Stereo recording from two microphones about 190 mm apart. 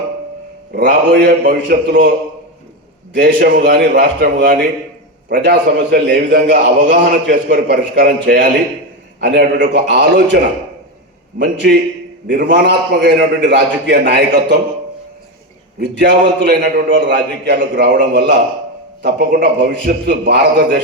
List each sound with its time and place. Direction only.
0.7 s a man's voice: 60° right (ahead or behind)
11.3 s a man's voice: 65° right (ahead or behind)
15.8 s a man's voice: 65° right (ahead or behind)